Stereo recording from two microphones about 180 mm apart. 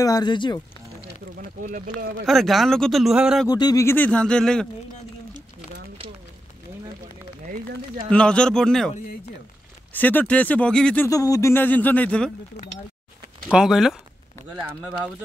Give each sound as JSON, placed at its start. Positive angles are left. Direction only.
{"t": 0.0, "sound": "speech", "side_deg": 20}
{"t": 1.6, "sound": "speech", "side_deg": -45}
{"t": 2.2, "sound": "speech", "side_deg": 0}
{"t": 3.4, "sound": "speech", "side_deg": 20}
{"t": 8.1, "sound": "speech", "side_deg": 5}
{"t": 9.9, "sound": "speech", "side_deg": 10}
{"t": 11.1, "sound": "speech", "side_deg": 20}
{"t": 13.5, "sound": "speech", "side_deg": -5}